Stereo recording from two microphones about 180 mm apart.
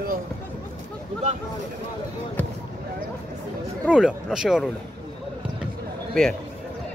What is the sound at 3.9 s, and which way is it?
Speech, 5° right (ahead or behind).